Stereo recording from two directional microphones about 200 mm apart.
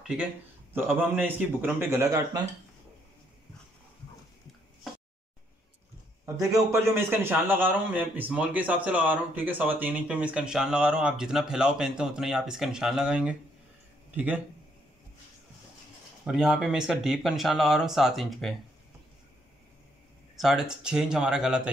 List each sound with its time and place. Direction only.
0.0 s a man's voice: 5° right (ahead or behind)
6.2 s a man's voice: 15° right (ahead or behind)
16.3 s speech: centre (ahead or behind)
20.3 s speech: centre (ahead or behind)